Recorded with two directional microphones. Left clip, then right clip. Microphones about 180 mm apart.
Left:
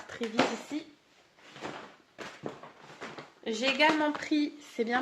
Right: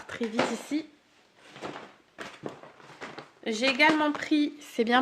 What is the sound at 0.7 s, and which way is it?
Speech, 45° right (ahead or behind).